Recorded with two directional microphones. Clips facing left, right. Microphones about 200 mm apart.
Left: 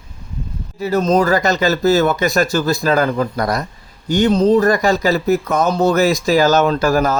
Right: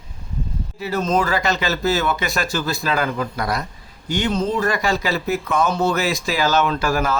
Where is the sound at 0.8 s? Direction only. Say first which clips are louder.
Left 6 dB; 40° left (ahead or behind).